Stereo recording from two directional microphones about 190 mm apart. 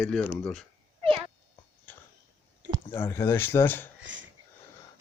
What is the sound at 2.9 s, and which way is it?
Speech, 15° left (ahead or behind).